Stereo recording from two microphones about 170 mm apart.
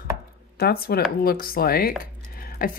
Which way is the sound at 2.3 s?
60° left (ahead or behind).